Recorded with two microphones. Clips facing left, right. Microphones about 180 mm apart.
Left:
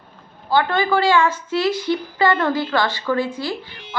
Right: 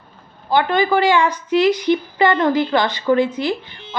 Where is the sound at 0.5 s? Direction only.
15° right (ahead or behind).